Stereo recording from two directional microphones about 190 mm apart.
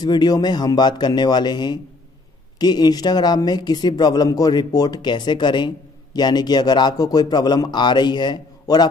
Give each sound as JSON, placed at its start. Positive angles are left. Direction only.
{"t": 0.0, "sound": "speech", "side_deg": 20}